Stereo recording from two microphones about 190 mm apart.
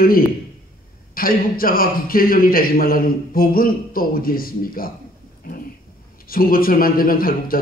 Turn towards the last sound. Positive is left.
turn(degrees=50)  # may be behind; listen again after turning